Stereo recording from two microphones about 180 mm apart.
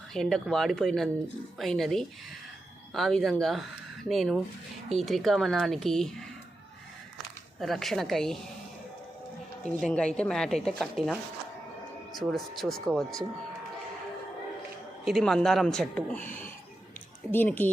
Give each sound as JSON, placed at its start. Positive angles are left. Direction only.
{"t": 0.1, "sound": "speech", "side_deg": 0}
{"t": 7.6, "sound": "speech", "side_deg": 0}
{"t": 9.6, "sound": "speech", "side_deg": 5}
{"t": 12.3, "sound": "speech", "side_deg": 0}
{"t": 15.0, "sound": "speech", "side_deg": 0}
{"t": 17.3, "sound": "speech", "side_deg": 10}